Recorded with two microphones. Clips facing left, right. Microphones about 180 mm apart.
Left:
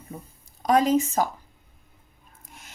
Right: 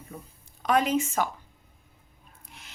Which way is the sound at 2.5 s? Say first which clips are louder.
Left 3 dB; 45° left (ahead or behind).